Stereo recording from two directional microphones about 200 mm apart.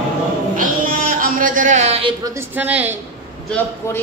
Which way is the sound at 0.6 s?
40° right (ahead or behind).